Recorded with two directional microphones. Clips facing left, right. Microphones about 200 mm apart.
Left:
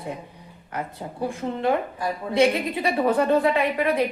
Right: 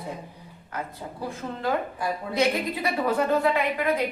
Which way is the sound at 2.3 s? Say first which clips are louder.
Left 5 dB; 30° left (ahead or behind).